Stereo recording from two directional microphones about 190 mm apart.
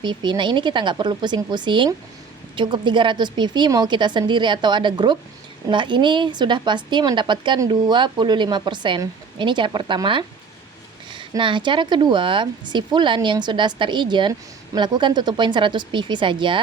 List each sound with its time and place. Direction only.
0.0 s speech: 25° right (ahead or behind)